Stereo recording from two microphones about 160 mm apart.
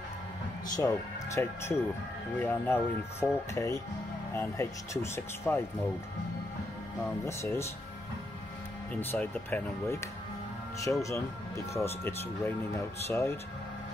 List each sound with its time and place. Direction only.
0.7 s speech: 20° left (ahead or behind)
7.0 s speech: 15° left (ahead or behind)
9.0 s speech: 15° left (ahead or behind)